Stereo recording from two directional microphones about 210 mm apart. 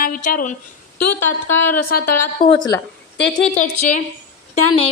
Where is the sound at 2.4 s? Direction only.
25° left (ahead or behind).